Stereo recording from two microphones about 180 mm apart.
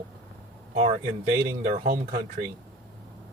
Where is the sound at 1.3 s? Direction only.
50° right (ahead or behind).